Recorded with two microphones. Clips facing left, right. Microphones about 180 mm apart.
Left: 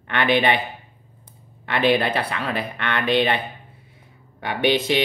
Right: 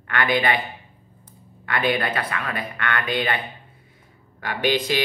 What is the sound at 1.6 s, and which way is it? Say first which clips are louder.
Speech: left 4 dB; 25° left (ahead or behind).